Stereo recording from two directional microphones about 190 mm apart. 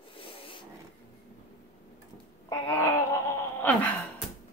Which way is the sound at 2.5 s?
15° left (ahead or behind).